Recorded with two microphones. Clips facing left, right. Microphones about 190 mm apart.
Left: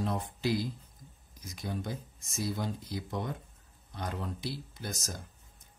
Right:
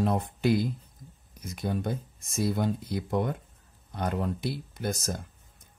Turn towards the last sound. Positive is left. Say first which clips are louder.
# right 8 dB
turn(degrees=-55)  # may be behind; listen again after turning